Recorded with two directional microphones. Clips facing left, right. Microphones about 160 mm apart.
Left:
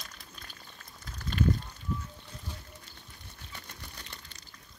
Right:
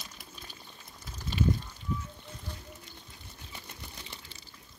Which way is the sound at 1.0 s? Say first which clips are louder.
Left 1 dB; 5° right (ahead or behind).